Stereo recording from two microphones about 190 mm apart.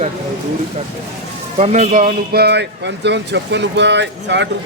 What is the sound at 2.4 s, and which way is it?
Speech, 60° right (ahead or behind).